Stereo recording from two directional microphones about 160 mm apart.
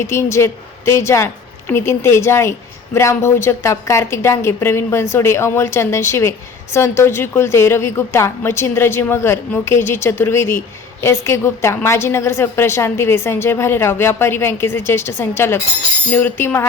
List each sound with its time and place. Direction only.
0.0 s a woman's voice: 15° left (ahead or behind)